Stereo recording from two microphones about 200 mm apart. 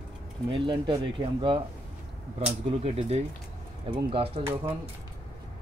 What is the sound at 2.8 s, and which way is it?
Speech, 30° right (ahead or behind).